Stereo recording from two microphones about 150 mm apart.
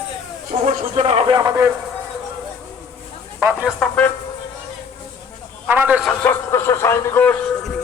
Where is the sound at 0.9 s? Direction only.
40° right (ahead or behind).